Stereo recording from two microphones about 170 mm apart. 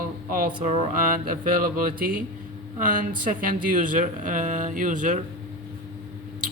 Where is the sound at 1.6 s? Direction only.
55° right (ahead or behind).